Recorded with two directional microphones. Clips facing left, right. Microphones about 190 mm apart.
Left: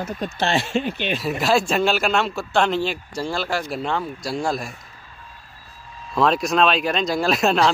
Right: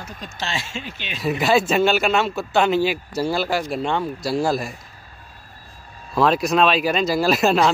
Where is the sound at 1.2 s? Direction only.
Centre (ahead or behind).